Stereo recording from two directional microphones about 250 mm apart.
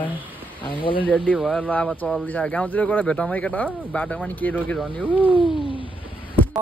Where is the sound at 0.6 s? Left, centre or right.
Centre.